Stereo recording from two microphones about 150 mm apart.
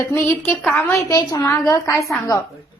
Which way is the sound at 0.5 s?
10° left (ahead or behind).